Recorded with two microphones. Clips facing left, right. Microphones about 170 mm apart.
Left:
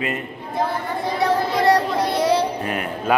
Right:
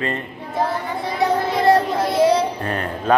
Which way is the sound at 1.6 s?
25° right (ahead or behind).